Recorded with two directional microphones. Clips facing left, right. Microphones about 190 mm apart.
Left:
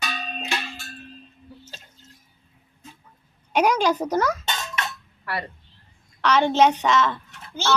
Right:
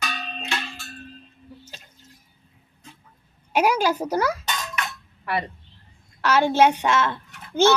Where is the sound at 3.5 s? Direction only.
5° right (ahead or behind).